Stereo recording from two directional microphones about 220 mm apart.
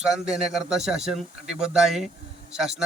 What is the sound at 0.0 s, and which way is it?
Speech, centre (ahead or behind).